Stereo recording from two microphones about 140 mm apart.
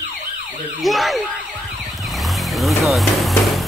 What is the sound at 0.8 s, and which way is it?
Speech, centre (ahead or behind).